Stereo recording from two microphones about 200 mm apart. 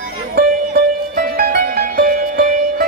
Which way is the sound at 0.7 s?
45° right (ahead or behind).